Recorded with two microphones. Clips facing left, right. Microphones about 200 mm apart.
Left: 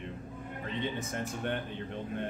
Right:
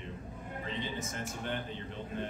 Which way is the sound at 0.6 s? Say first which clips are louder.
Left 3 dB; 60° left (ahead or behind).